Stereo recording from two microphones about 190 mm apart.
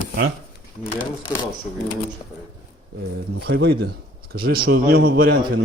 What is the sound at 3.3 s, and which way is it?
A man's voice, 60° right (ahead or behind).